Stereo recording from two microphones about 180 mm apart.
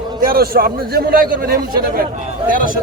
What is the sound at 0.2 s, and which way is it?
A man's voice, 55° right (ahead or behind).